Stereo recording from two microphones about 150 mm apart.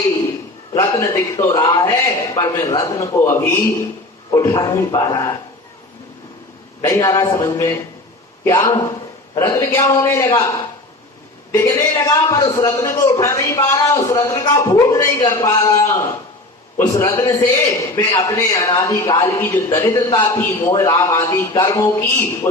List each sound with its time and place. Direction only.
0.8 s a man's voice: 20° left (ahead or behind)
6.8 s a man's voice: 20° left (ahead or behind)
11.5 s a man's voice: 15° left (ahead or behind)
19.4 s a man's voice: 15° left (ahead or behind)
19.9 s a man's voice: 25° left (ahead or behind)